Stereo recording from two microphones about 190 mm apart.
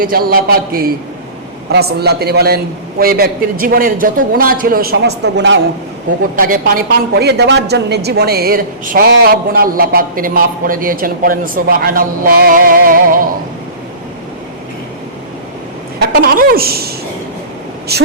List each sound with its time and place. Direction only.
0.0 s a woman's voice: 50° right (ahead or behind)
6.3 s a woman's voice: 50° right (ahead or behind)
16.0 s a woman's voice: 50° right (ahead or behind)
17.9 s a man's voice: 55° right (ahead or behind)